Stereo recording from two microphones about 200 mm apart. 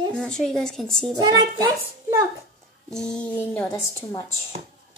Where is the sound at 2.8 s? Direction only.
5° left (ahead or behind).